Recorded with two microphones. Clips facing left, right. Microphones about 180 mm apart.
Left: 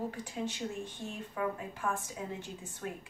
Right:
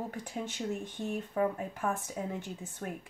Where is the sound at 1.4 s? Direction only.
45° right (ahead or behind).